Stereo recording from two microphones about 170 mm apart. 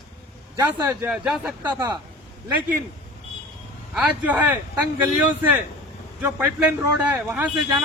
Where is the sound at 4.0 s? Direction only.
10° right (ahead or behind).